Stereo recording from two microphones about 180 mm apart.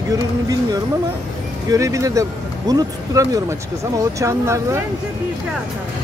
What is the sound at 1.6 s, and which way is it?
Speech, 20° right (ahead or behind).